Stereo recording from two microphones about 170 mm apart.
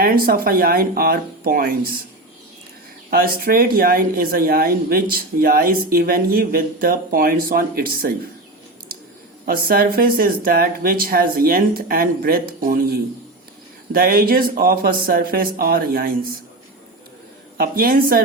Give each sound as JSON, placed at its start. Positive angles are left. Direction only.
{"t": 0.0, "sound": "speech", "side_deg": -60}
{"t": 3.1, "sound": "speech", "side_deg": -60}
{"t": 9.5, "sound": "speech", "side_deg": -60}
{"t": 17.6, "sound": "speech", "side_deg": -60}